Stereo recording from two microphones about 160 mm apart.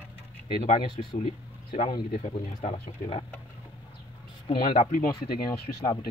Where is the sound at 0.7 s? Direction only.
35° left (ahead or behind).